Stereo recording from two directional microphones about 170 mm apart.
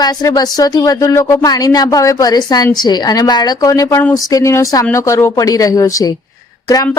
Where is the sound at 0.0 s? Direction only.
20° left (ahead or behind).